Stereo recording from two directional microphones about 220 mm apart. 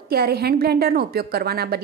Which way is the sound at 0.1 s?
45° right (ahead or behind).